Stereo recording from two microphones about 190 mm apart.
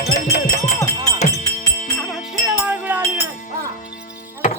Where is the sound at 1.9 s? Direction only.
Centre (ahead or behind).